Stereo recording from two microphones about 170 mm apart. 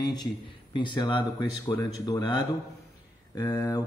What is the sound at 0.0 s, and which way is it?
A man's voice, 25° left (ahead or behind).